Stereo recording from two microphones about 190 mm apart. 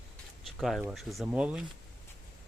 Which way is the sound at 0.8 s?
Centre (ahead or behind).